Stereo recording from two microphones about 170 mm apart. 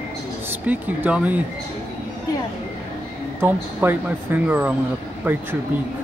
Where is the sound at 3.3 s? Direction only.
10° right (ahead or behind).